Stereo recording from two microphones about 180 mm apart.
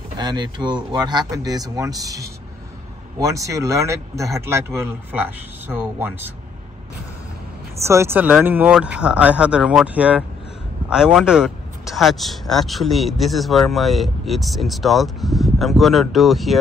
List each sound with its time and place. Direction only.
0.2 s speech: 25° right (ahead or behind)
7.8 s speech: 15° right (ahead or behind)